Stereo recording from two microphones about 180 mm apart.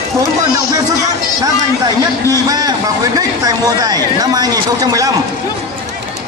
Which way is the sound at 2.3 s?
20° right (ahead or behind).